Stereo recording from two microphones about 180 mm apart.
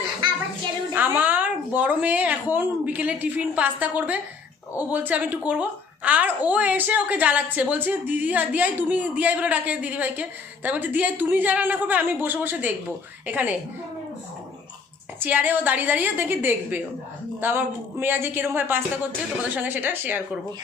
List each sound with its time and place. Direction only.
0.9 s a woman's voice: 10° right (ahead or behind)
15.2 s a woman's voice: 10° right (ahead or behind)